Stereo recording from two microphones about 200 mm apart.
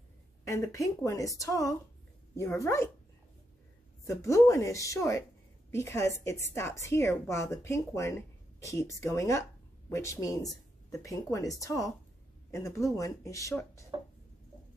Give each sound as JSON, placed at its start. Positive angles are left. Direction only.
{"t": 0.5, "sound": "speech", "side_deg": 15}
{"t": 4.1, "sound": "speech", "side_deg": 15}